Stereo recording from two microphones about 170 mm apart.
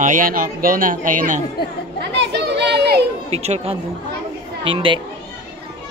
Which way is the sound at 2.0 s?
85° right.